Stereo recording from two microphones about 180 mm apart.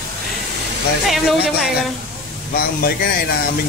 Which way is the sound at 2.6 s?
55° left (ahead or behind).